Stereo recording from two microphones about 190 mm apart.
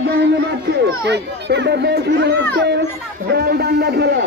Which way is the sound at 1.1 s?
60° right (ahead or behind).